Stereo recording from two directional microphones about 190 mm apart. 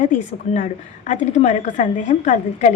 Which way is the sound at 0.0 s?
40° left (ahead or behind).